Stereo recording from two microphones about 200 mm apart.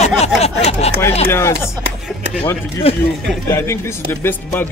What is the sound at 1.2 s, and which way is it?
Speech, 10° left (ahead or behind).